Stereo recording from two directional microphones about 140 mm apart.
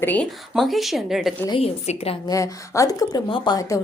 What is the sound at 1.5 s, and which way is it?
Speech, 45° left (ahead or behind).